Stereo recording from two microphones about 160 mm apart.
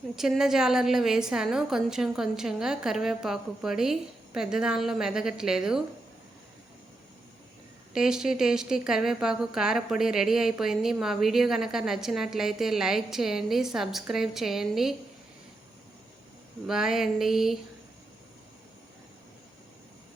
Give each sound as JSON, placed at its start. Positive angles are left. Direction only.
{"t": 0.2, "sound": "a woman's voice", "side_deg": -5}
{"t": 7.9, "sound": "a woman's voice", "side_deg": -5}
{"t": 16.6, "sound": "a woman's voice", "side_deg": -5}